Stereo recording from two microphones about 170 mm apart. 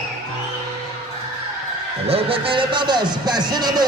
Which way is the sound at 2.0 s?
35° right (ahead or behind).